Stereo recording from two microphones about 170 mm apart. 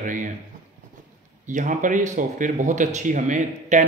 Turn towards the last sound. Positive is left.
turn(degrees=-45)  # may be behind; listen again after turning